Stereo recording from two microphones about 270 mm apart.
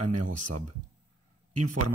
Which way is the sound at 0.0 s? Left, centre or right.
Right.